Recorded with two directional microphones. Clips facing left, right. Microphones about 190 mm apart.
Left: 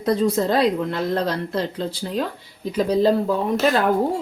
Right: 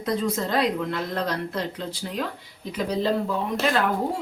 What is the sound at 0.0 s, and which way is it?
Speech, 35° left (ahead or behind).